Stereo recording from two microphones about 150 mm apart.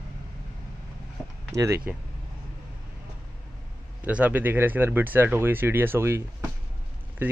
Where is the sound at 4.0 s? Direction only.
10° right (ahead or behind).